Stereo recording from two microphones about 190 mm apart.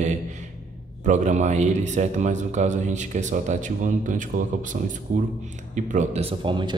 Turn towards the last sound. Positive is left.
turn(degrees=-25)  # may be behind; listen again after turning